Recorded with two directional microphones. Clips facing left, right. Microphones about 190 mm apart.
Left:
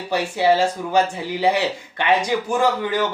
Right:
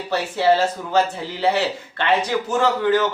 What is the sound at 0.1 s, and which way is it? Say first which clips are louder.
Speech: even; 15° left (ahead or behind).